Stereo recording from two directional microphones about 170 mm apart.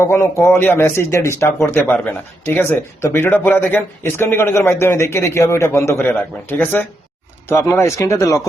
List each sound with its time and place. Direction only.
0.0 s speech: 15° left (ahead or behind)